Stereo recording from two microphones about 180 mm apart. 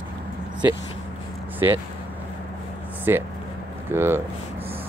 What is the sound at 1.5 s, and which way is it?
Speech, 10° right (ahead or behind).